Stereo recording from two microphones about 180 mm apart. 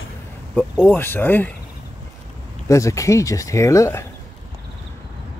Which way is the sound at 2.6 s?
15° left (ahead or behind).